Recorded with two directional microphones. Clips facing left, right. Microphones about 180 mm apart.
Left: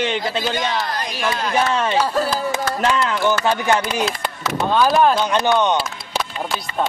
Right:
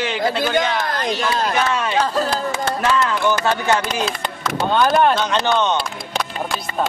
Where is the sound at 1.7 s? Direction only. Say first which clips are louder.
Left 2 dB; 30° left (ahead or behind).